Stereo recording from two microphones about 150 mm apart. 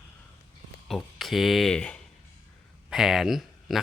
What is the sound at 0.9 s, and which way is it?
Speech, centre (ahead or behind).